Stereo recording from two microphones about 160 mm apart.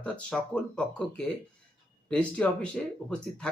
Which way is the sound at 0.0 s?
5° left (ahead or behind).